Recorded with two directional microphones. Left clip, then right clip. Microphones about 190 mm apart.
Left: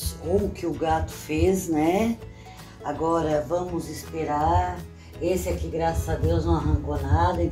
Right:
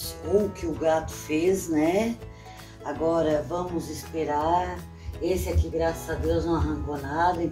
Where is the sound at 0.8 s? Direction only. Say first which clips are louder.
Right 2 dB; 15° left (ahead or behind).